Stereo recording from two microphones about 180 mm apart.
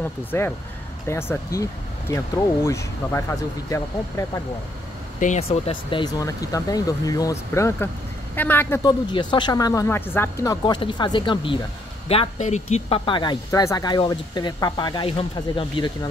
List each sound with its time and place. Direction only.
0.0 s speech: 10° left (ahead or behind)
5.2 s speech: 35° left (ahead or behind); by 8.8 s 10° left (ahead or behind)
8.8 s speech: 25° left (ahead or behind)
12.1 s speech: 35° left (ahead or behind)